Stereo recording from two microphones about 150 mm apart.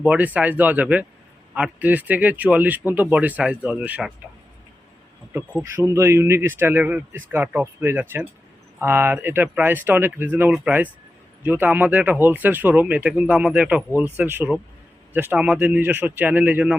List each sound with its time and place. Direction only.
0.0 s speech: 10° right (ahead or behind)
5.6 s speech: 20° right (ahead or behind)